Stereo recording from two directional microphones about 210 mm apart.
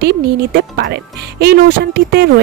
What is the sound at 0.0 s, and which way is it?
Speech, 50° right (ahead or behind).